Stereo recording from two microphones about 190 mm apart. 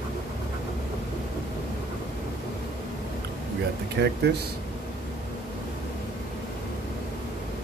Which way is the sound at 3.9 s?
60° right (ahead or behind).